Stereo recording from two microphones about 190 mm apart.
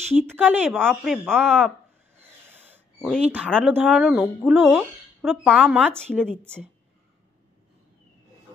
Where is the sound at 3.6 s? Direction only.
5° right (ahead or behind).